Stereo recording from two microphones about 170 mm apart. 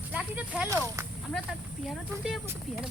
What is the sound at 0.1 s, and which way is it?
Speech, 10° right (ahead or behind).